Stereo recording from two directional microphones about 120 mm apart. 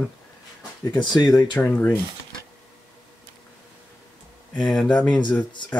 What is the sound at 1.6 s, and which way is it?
Speech, 15° left (ahead or behind).